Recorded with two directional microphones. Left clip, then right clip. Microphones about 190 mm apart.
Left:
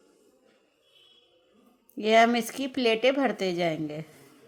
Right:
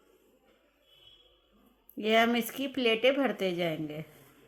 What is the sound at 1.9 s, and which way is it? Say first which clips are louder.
Speech: left 5 dB; 20° left (ahead or behind).